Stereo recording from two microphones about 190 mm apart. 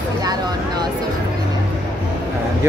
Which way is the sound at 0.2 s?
20° right (ahead or behind).